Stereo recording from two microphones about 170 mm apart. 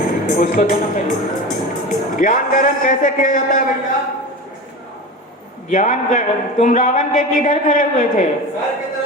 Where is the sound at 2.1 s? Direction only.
50° left (ahead or behind).